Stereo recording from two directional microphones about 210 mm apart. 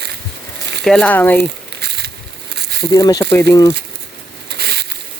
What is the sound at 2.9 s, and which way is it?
Speech, 15° left (ahead or behind).